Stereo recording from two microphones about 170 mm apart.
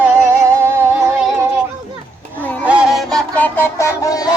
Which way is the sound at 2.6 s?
5° right (ahead or behind).